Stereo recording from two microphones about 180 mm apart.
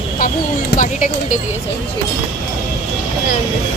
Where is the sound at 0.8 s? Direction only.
45° left (ahead or behind).